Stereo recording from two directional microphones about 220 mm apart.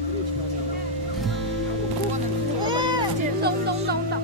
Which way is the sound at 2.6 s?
20° right (ahead or behind).